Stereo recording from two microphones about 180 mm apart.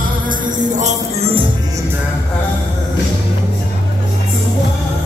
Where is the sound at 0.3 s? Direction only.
40° right (ahead or behind).